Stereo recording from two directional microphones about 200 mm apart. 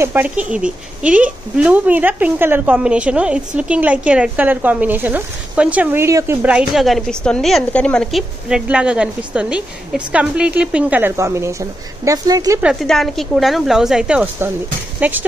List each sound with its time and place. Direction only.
0.0 s speech: 10° right (ahead or behind)
12.6 s speech: centre (ahead or behind)